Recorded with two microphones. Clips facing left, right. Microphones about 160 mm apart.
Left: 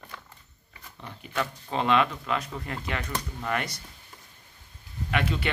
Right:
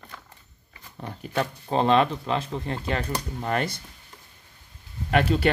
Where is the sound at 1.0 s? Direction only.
45° right (ahead or behind).